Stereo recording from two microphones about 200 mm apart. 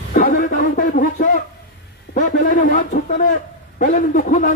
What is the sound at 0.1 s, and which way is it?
Music, 45° left (ahead or behind).